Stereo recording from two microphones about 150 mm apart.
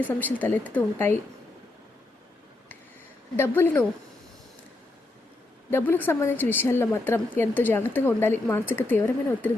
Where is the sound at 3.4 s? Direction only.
15° left (ahead or behind).